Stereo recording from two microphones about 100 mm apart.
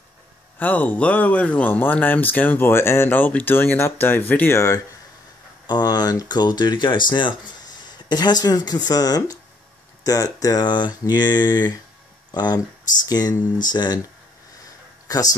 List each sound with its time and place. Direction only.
0.6 s speech: 15° left (ahead or behind)
5.7 s speech: 40° left (ahead or behind)
15.1 s speech: 40° left (ahead or behind)